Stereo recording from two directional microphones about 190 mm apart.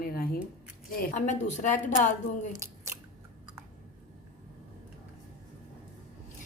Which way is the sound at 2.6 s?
15° right (ahead or behind).